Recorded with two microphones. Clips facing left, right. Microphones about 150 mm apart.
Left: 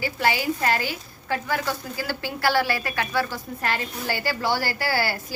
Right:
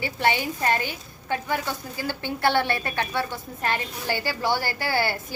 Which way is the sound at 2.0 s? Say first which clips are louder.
Right 1 dB; 20° right (ahead or behind).